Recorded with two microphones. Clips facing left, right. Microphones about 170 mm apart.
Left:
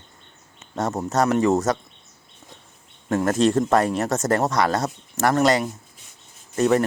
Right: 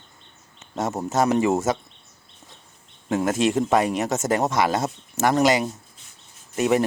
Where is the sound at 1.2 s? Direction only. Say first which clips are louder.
Left 1 dB; 15° right (ahead or behind).